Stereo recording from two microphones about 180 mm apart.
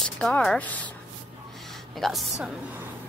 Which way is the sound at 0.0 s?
5° left (ahead or behind).